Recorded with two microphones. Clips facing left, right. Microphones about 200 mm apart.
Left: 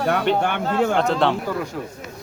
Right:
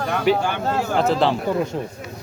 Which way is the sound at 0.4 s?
60° left (ahead or behind).